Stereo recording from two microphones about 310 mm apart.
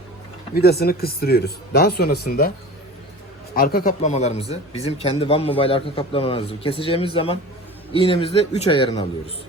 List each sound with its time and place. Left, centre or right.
0.5 s speech: left
3.5 s speech: left